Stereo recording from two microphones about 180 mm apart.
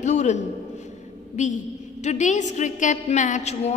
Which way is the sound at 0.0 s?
40° left (ahead or behind).